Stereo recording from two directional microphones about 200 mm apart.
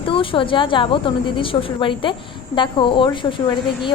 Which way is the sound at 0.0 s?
25° left (ahead or behind).